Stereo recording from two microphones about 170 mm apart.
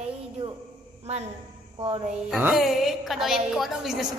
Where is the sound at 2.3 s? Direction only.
Centre (ahead or behind).